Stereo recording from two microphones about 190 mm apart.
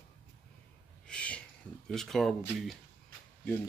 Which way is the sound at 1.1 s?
5° left (ahead or behind).